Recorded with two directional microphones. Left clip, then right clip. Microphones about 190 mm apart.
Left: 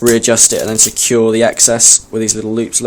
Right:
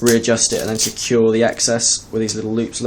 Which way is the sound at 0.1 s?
45° left (ahead or behind).